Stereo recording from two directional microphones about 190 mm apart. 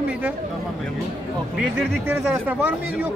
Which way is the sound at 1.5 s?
Centre (ahead or behind).